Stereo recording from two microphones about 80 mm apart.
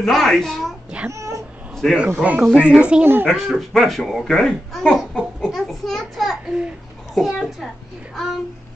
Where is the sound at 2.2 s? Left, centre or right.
Centre.